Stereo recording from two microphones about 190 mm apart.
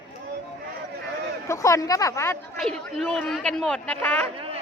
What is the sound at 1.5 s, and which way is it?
Speech, 15° left (ahead or behind).